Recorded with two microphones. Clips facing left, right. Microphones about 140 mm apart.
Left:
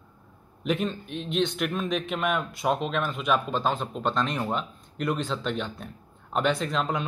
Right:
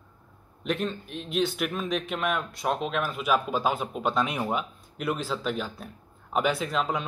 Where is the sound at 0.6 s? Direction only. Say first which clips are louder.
Left 2 dB; centre (ahead or behind).